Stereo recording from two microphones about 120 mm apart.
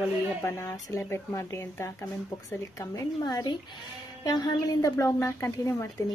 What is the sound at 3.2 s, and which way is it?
Speech, 35° left (ahead or behind).